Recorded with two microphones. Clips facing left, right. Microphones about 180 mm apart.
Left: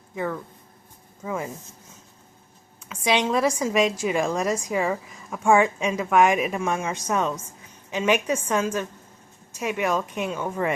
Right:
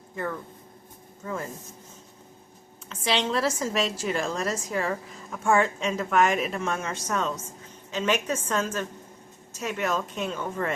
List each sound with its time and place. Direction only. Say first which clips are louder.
3.0 s a woman's voice: left 4 dB; 15° left (ahead or behind)